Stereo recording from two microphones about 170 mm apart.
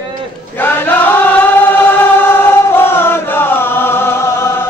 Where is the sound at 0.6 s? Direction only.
10° left (ahead or behind).